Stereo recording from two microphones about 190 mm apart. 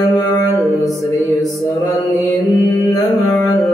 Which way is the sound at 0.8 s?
Centre (ahead or behind).